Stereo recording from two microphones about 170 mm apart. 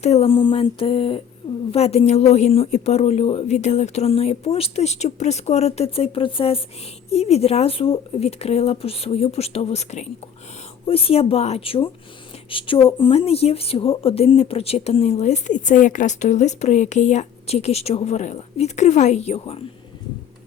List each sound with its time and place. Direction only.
0.0 s a woman's voice: 40° left (ahead or behind)